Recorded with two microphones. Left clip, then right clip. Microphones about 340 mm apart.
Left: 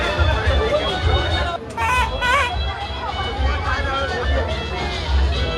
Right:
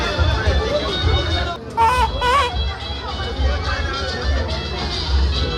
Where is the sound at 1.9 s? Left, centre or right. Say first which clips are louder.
Right 1 dB; right.